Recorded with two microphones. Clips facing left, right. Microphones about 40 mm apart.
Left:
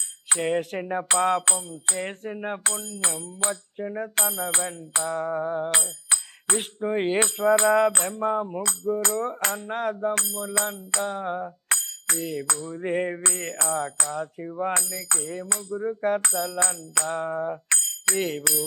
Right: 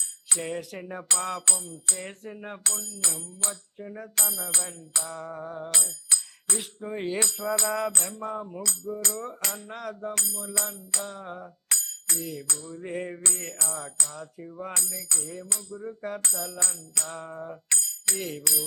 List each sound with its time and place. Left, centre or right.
0.3 s music: left